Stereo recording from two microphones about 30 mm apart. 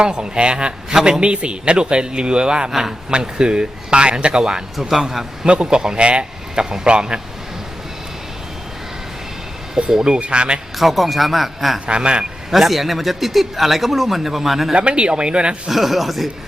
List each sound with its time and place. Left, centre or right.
0.0 s speech: right
2.6 s speech: centre
3.1 s speech: right
4.8 s speech: centre
5.6 s speech: right
9.9 s speech: right
10.2 s speech: right
10.8 s speech: centre
11.9 s speech: right
12.5 s speech: centre
14.8 s speech: right
15.7 s speech: centre